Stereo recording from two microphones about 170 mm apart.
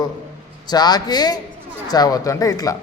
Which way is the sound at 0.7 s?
25° left (ahead or behind).